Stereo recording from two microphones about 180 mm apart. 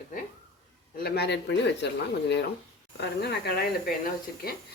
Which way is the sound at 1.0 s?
65° left (ahead or behind).